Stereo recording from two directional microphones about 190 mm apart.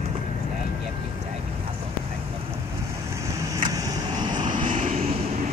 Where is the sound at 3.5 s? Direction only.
20° right (ahead or behind).